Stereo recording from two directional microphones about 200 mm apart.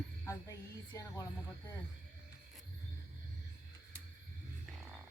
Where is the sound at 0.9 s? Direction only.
15° left (ahead or behind).